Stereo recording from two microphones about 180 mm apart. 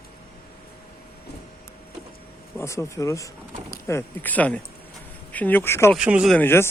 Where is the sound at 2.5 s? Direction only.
15° left (ahead or behind).